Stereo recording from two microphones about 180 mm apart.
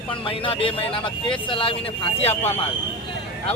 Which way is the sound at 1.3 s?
30° left (ahead or behind).